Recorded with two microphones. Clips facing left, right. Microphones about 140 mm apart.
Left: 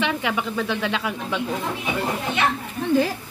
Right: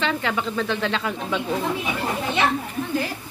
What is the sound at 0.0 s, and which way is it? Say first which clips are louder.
Speech: even; 10° left (ahead or behind).